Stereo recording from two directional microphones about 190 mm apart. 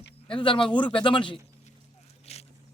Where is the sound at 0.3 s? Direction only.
25° left (ahead or behind).